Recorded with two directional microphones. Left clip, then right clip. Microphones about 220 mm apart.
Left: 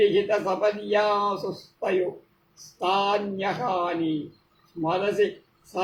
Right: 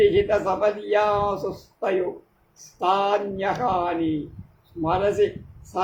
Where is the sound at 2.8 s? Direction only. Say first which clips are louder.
Right 2 dB; 15° right (ahead or behind).